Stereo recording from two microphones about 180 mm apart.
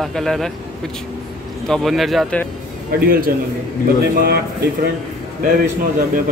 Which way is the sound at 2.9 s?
55° right (ahead or behind).